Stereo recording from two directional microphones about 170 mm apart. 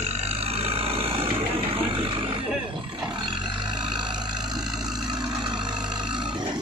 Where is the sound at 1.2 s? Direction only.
35° right (ahead or behind).